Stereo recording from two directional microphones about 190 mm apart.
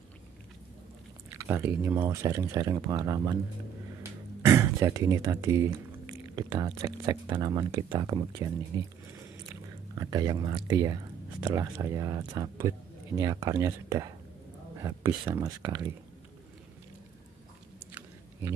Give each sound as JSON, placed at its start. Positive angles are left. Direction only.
{"t": 1.4, "sound": "speech", "side_deg": -10}
{"t": 4.5, "sound": "speech", "side_deg": -15}
{"t": 9.9, "sound": "speech", "side_deg": -20}